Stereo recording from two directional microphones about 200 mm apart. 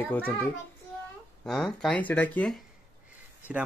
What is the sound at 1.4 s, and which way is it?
Speech, centre (ahead or behind).